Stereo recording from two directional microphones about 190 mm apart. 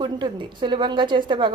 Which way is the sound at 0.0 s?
25° right (ahead or behind).